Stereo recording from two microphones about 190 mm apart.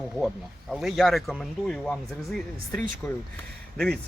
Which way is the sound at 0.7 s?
Centre (ahead or behind).